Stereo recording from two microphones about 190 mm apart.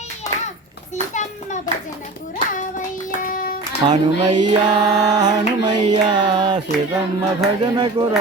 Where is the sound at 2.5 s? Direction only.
45° left (ahead or behind).